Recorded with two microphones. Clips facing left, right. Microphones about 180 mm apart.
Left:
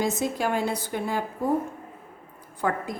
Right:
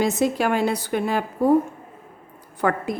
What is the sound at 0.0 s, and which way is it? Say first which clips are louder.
A woman's voice: right 5 dB; 75° right (ahead or behind).